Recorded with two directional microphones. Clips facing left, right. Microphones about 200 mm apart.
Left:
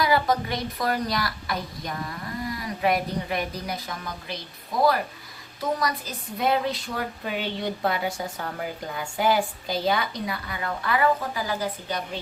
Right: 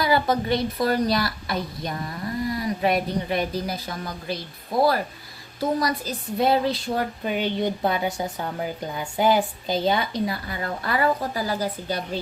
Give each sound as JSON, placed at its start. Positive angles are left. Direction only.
{"t": 0.0, "sound": "a woman's voice", "side_deg": -30}
{"t": 5.5, "sound": "speech", "side_deg": -30}